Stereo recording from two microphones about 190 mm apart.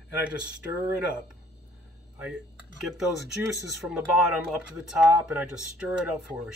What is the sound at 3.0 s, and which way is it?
Speech, centre (ahead or behind).